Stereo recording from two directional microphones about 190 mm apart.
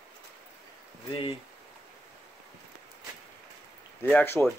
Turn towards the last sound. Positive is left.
turn(degrees=10)  # may be behind; listen again after turning